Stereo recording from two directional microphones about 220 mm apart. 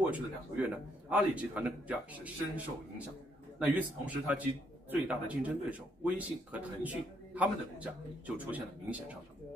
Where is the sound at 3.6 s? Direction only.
5° right (ahead or behind).